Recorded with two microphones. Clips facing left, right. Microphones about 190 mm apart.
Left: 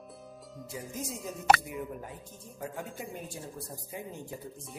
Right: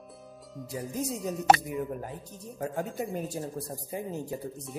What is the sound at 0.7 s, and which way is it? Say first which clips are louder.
Speech: right 6 dB; 35° right (ahead or behind).